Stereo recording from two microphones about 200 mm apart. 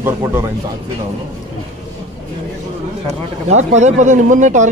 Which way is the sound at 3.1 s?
35° right (ahead or behind).